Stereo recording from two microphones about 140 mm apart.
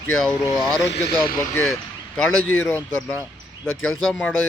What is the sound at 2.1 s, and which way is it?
Speech, 5° left (ahead or behind).